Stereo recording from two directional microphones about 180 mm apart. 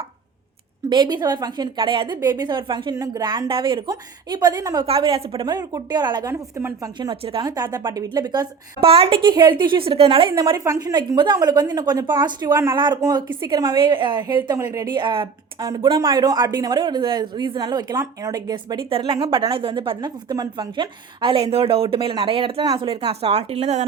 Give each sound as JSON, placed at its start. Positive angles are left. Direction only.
{"t": 0.9, "sound": "speech", "side_deg": -25}
{"t": 10.5, "sound": "speech", "side_deg": -15}
{"t": 14.6, "sound": "speech", "side_deg": -15}
{"t": 14.8, "sound": "speech", "side_deg": -25}